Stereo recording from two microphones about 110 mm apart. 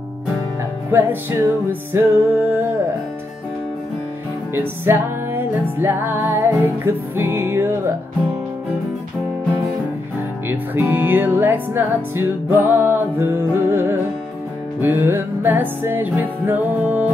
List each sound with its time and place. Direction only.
0.9 s music: 20° right (ahead or behind)
4.6 s music: 20° right (ahead or behind)
10.5 s music: 20° right (ahead or behind)